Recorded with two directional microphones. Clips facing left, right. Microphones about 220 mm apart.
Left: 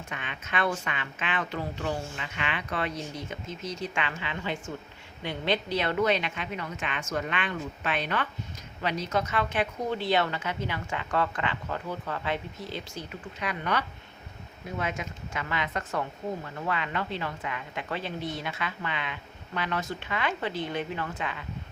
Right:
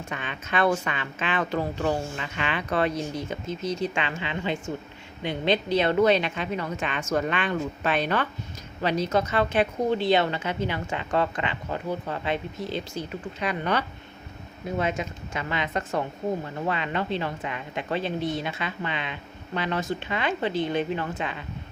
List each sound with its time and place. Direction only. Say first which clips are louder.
0.1 s a woman's voice: right 4 dB; 35° right (ahead or behind)